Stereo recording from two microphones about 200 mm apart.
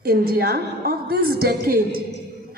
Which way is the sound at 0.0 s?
50° right (ahead or behind).